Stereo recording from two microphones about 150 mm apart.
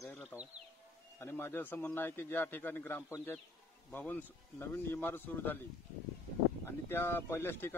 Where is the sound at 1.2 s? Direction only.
15° left (ahead or behind).